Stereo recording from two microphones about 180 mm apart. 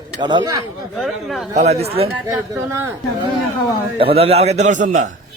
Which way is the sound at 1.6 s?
35° right (ahead or behind).